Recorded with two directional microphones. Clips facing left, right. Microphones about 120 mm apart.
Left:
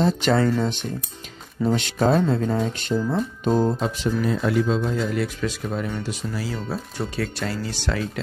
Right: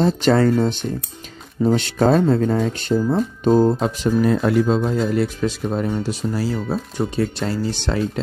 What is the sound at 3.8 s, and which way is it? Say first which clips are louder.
Speech: right 5 dB; 50° right (ahead or behind).